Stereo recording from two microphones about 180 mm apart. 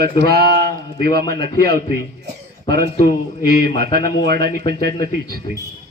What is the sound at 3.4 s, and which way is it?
Speech, 60° right (ahead or behind).